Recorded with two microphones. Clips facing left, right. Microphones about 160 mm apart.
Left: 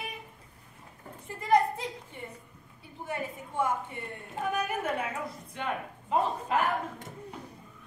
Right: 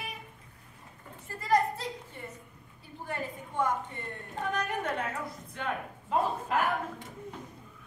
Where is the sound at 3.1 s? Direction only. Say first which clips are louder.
Left 1 dB; 10° left (ahead or behind).